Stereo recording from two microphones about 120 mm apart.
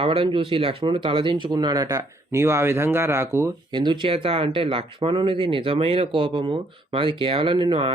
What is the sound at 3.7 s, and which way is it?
Speech, 40° right (ahead or behind).